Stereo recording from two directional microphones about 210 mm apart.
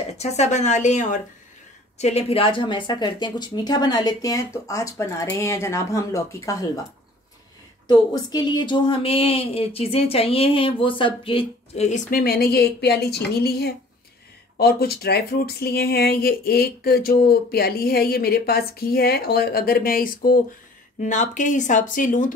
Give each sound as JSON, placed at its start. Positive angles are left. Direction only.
{"t": 0.2, "sound": "speech", "side_deg": 30}
{"t": 7.9, "sound": "speech", "side_deg": 20}